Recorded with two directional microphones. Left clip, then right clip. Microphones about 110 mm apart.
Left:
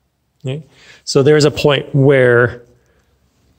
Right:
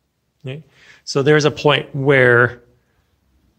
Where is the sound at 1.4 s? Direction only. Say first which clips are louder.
Left 3 dB; 85° left; by 2.6 s 65° left (ahead or behind).